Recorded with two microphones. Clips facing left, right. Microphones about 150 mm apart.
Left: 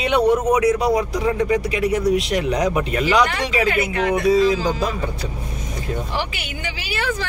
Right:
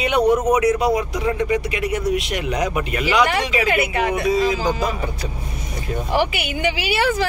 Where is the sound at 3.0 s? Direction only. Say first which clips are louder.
Right 1 dB; 10° right (ahead or behind).